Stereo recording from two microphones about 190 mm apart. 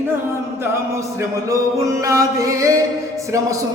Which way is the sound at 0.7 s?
15° right (ahead or behind).